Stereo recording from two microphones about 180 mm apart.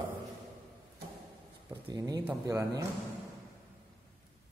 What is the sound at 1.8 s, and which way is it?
Speech, 20° right (ahead or behind).